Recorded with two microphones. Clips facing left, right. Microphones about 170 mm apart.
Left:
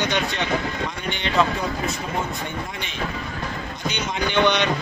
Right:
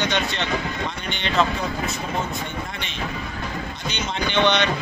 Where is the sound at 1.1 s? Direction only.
10° left (ahead or behind).